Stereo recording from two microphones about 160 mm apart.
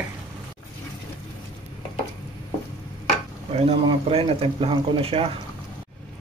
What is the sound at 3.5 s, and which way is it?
Speech, 40° right (ahead or behind).